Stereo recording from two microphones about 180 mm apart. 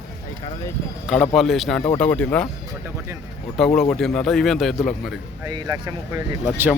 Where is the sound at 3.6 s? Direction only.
Centre (ahead or behind).